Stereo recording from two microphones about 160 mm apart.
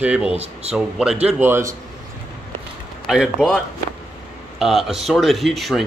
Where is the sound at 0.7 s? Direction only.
5° right (ahead or behind).